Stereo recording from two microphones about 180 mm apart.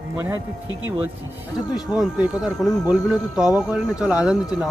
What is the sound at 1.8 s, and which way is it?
Speech, 5° right (ahead or behind).